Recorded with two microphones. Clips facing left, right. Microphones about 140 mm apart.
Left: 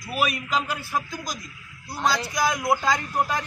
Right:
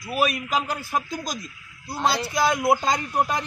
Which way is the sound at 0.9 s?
25° right (ahead or behind).